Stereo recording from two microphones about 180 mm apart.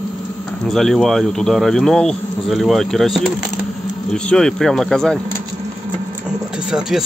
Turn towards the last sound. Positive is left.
turn(degrees=-5)  # may be behind; listen again after turning